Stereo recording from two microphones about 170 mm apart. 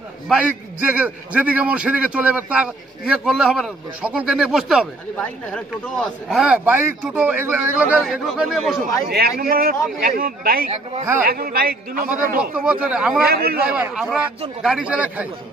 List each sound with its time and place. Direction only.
0.3 s a man's voice: 10° right (ahead or behind); by 6.0 s 5° left (ahead or behind)
6.2 s a man's voice: 5° right (ahead or behind)
8.0 s speech: centre (ahead or behind)
9.4 s a man's voice: 60° right (ahead or behind)
12.5 s speech: 5° right (ahead or behind)
13.3 s a man's voice: 65° right (ahead or behind)
13.7 s a man's voice: 5° right (ahead or behind)